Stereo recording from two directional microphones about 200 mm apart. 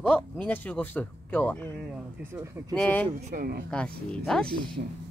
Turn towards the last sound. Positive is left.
turn(degrees=-25)  # may be behind; listen again after turning